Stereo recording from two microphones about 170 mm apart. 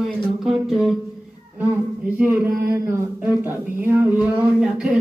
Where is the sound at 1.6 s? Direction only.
10° right (ahead or behind).